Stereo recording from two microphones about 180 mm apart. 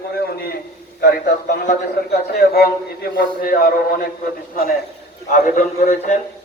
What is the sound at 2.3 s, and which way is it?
A man's voice, 60° left (ahead or behind).